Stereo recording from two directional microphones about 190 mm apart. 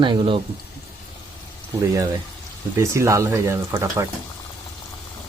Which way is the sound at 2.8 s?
15° right (ahead or behind).